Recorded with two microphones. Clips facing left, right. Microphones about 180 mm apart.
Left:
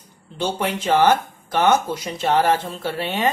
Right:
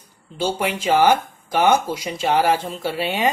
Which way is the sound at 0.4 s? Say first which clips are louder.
Right 1 dB; 10° right (ahead or behind).